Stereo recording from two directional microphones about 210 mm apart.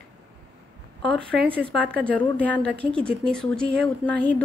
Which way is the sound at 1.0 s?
5° left (ahead or behind).